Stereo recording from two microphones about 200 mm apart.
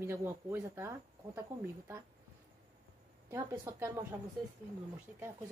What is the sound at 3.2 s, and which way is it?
Speech, 15° right (ahead or behind).